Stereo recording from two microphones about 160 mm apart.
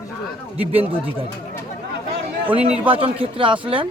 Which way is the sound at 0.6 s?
35° right (ahead or behind).